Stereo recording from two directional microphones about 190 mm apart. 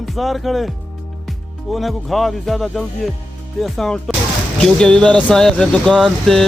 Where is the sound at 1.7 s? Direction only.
Centre (ahead or behind).